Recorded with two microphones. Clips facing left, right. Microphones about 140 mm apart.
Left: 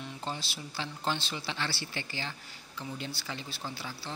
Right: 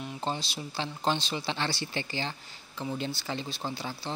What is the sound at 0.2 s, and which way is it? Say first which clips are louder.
Speech: right 6 dB; 25° right (ahead or behind).